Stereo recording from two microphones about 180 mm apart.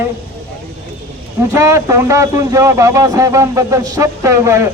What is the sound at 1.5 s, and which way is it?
Speech, 15° right (ahead or behind).